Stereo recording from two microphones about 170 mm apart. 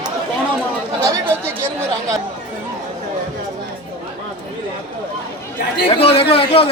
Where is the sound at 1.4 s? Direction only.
15° right (ahead or behind).